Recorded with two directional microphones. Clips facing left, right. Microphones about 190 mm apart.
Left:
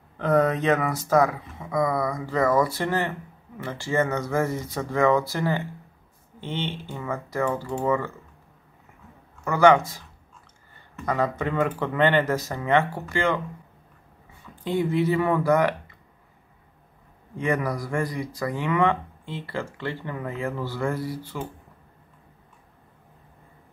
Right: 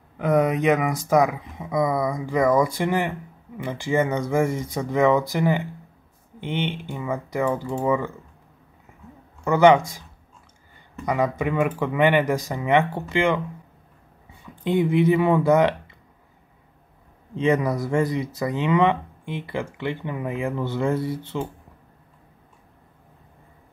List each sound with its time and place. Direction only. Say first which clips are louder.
0.2 s speech: right 1 dB; 10° right (ahead or behind)
9.4 s speech: right 2 dB; 20° right (ahead or behind)
11.1 s speech: right 2 dB; 15° right (ahead or behind)
14.4 s speech: right 4 dB; 15° right (ahead or behind)
17.4 s speech: right 5 dB; 20° right (ahead or behind)